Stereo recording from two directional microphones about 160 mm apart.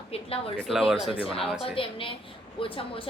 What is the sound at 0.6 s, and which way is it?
Speech, centre (ahead or behind).